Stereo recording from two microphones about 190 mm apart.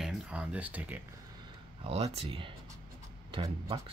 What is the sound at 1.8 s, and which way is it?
Speech, 30° right (ahead or behind).